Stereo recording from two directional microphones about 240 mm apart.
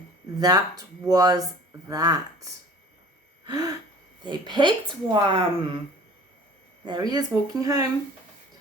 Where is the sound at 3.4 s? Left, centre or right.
Centre.